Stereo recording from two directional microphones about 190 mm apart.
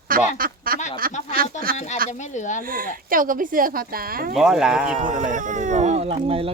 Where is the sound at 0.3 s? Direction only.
50° right (ahead or behind).